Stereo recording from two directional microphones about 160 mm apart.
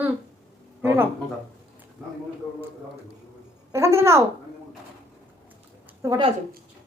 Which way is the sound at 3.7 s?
15° right (ahead or behind).